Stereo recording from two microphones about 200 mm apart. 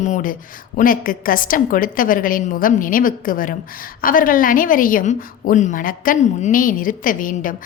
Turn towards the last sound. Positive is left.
turn(degrees=40)  # may be behind; listen again after turning